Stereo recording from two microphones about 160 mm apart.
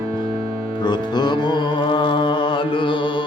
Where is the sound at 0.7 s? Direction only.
30° left (ahead or behind).